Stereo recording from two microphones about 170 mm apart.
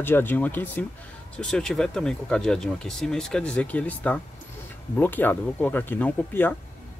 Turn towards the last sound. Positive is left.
turn(degrees=10)  # may be behind; listen again after turning